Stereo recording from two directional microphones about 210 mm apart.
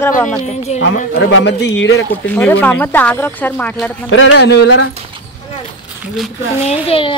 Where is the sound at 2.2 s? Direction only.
5° left (ahead or behind).